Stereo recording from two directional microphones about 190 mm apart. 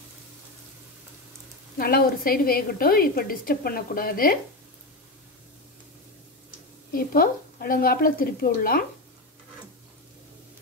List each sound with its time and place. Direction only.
1.8 s a woman's voice: 50° left (ahead or behind)
6.9 s a woman's voice: 50° left (ahead or behind)